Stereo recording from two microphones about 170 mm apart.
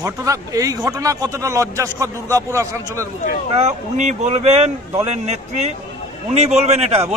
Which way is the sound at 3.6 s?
45° right (ahead or behind).